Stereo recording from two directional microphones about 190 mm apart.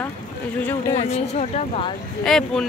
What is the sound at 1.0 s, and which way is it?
Speech, 35° left (ahead or behind).